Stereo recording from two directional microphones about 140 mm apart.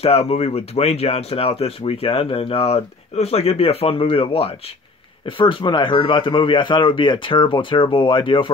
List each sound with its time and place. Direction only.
0.0 s speech: 50° left (ahead or behind)